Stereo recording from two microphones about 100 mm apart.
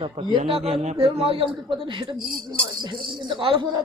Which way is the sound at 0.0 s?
70° right (ahead or behind).